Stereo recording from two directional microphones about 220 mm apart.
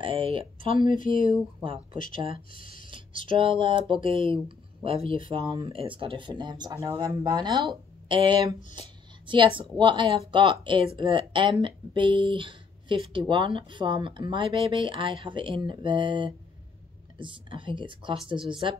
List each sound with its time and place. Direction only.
0.0 s speech: 25° right (ahead or behind)
2.1 s speech: 25° right (ahead or behind)
2.5 s speech: 40° left (ahead or behind)
3.3 s speech: 25° right (ahead or behind)
8.7 s a sound: 20° right (ahead or behind)
9.8 s speech: 20° right (ahead or behind)